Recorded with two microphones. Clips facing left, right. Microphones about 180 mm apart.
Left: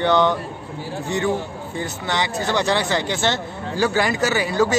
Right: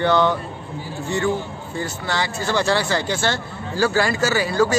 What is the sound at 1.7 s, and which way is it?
Speech, 20° left (ahead or behind).